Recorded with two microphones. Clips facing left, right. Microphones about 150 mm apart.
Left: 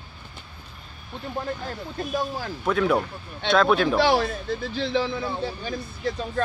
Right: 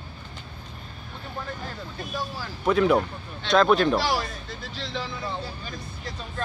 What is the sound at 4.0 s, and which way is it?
Speech, 60° left (ahead or behind).